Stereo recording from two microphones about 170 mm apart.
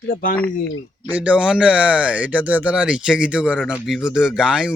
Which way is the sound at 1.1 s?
10° right (ahead or behind).